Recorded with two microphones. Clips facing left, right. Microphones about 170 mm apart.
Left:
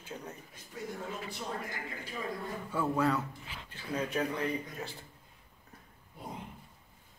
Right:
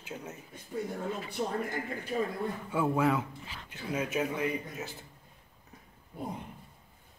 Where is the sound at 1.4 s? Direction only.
50° right (ahead or behind).